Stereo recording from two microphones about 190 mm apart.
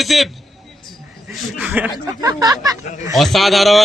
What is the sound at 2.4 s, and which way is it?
Speech, 20° right (ahead or behind).